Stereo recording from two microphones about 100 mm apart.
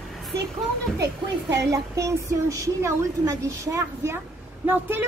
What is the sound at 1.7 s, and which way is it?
Speech, 35° right (ahead or behind).